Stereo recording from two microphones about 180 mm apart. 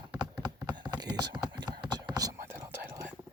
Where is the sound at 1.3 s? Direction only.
25° right (ahead or behind).